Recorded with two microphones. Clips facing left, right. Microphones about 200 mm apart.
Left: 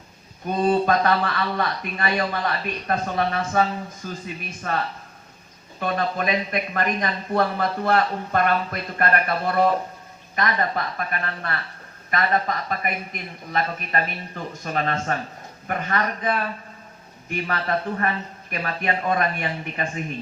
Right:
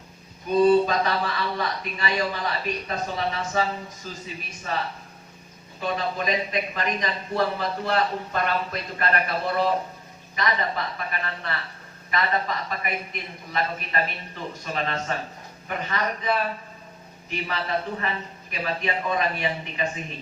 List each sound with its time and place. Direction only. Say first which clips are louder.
0.6 s speech: right 1 dB; 55° left (ahead or behind)
5.8 s speech: left 3 dB; 55° left (ahead or behind)